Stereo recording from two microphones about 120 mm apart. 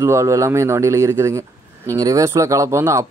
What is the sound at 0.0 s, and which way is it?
Speech, 25° right (ahead or behind).